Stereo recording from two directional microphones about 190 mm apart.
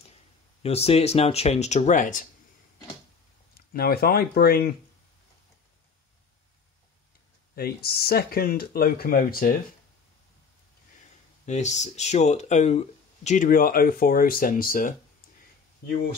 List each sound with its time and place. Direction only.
0.6 s speech: 35° left (ahead or behind)
3.7 s speech: 55° left (ahead or behind)
7.5 s speech: 55° left (ahead or behind)
11.4 s speech: 40° left (ahead or behind)